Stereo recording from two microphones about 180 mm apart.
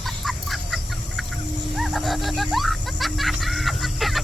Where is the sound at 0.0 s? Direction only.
Centre (ahead or behind).